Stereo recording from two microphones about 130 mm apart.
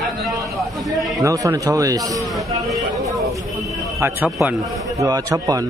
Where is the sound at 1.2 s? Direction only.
25° right (ahead or behind).